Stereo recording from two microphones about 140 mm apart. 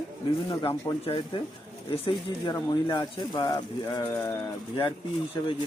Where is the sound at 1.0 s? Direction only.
40° left (ahead or behind).